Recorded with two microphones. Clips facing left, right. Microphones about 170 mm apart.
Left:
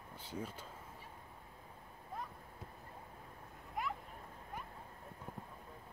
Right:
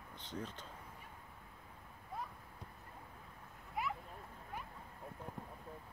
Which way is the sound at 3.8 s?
5° right (ahead or behind).